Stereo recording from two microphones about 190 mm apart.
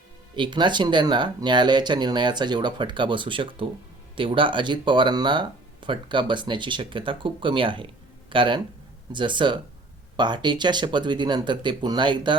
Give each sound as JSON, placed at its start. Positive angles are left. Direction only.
{"t": 0.3, "sound": "speech", "side_deg": -25}